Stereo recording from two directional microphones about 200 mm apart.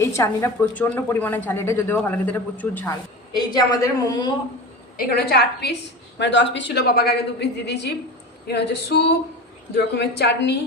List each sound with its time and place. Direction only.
0.0 s a woman's voice: 15° left (ahead or behind)
4.9 s a woman's voice: 50° left (ahead or behind)